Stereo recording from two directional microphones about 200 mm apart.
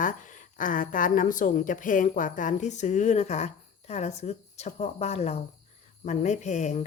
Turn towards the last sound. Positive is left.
turn(degrees=35)  # may be behind; listen again after turning